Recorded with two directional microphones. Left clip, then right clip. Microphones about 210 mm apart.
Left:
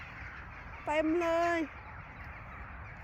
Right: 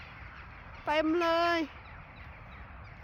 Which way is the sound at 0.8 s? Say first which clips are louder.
Right 2 dB; 25° right (ahead or behind).